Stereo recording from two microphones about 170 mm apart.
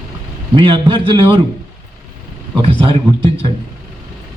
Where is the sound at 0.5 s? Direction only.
30° right (ahead or behind).